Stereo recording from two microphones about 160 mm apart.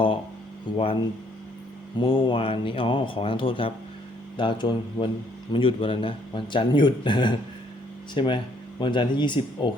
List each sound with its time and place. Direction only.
0.8 s a man's voice: 35° left (ahead or behind)